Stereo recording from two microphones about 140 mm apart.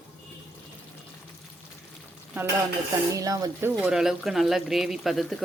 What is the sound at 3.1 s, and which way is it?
Speech, 25° right (ahead or behind).